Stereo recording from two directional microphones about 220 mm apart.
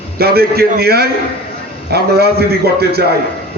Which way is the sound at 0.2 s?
45° right (ahead or behind).